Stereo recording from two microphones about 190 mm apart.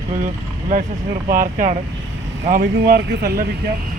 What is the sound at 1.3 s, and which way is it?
Speech, 45° right (ahead or behind).